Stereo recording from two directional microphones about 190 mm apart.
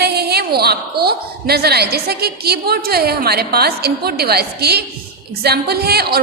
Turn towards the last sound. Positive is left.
turn(degrees=-55)  # may be behind; listen again after turning